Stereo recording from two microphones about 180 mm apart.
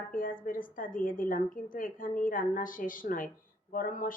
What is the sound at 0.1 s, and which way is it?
A woman's voice, 50° left (ahead or behind).